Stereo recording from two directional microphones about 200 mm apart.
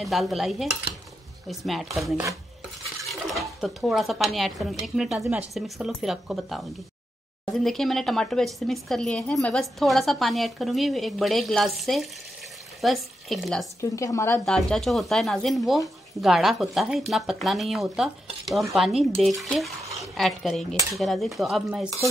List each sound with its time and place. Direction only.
0.0 s speech: centre (ahead or behind)
13.7 s speech: 15° left (ahead or behind); by 21.8 s centre (ahead or behind)